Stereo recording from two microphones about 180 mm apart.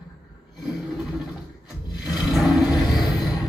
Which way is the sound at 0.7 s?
Centre (ahead or behind).